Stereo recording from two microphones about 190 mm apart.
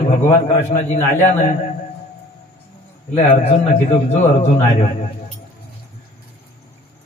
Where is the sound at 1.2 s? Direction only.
40° left (ahead or behind).